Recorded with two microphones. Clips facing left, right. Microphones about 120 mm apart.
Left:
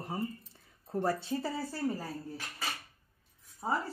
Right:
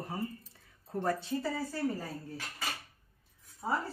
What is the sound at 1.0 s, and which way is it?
Speech, 30° left (ahead or behind).